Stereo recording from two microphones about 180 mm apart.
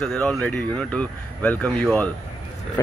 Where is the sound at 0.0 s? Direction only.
5° left (ahead or behind).